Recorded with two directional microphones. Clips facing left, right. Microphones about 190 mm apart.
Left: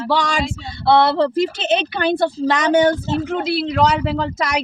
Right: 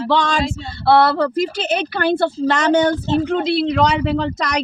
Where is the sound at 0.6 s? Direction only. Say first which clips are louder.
Even; 20° left (ahead or behind).